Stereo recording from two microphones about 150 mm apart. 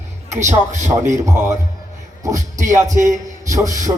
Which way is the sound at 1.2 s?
20° right (ahead or behind).